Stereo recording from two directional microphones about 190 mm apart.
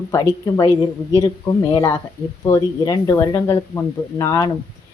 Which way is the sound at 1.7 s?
20° left (ahead or behind).